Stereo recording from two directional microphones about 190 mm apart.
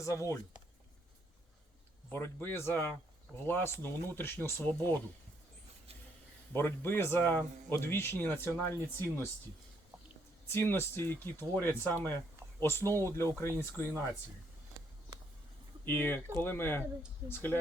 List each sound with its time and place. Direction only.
0.0 s speech: 15° left (ahead or behind)
2.1 s speech: 10° left (ahead or behind)
6.5 s speech: 10° left (ahead or behind)
10.5 s speech: 10° left (ahead or behind)
15.8 s speech: 10° left (ahead or behind)